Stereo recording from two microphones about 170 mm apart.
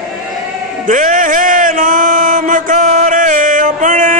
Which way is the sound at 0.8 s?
50° right (ahead or behind).